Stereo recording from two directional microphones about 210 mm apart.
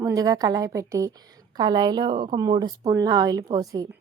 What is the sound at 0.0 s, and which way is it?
A woman's voice, 15° right (ahead or behind).